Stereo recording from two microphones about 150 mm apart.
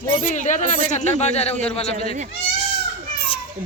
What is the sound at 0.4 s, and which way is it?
Speech, 55° left (ahead or behind).